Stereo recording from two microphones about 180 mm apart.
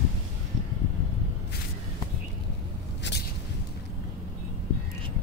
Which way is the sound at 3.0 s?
75° left (ahead or behind).